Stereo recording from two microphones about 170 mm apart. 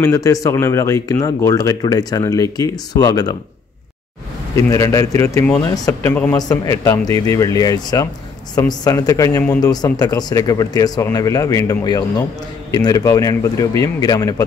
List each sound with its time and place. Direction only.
0.0 s speech: 20° left (ahead or behind)
4.6 s a man's voice: 20° left (ahead or behind)